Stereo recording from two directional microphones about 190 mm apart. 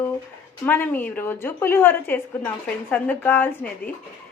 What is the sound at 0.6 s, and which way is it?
A woman's voice, 10° left (ahead or behind).